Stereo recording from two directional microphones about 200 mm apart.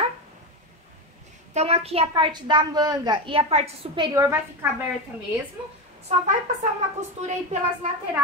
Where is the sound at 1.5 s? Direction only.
30° right (ahead or behind); by 4.4 s 15° right (ahead or behind).